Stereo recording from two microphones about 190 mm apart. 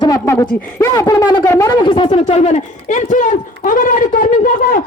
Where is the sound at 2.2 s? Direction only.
35° left (ahead or behind).